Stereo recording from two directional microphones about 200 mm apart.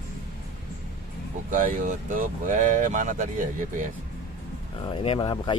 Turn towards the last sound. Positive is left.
turn(degrees=20)  # may be behind; listen again after turning